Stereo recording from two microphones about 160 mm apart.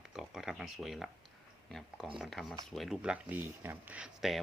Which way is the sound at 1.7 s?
Centre (ahead or behind).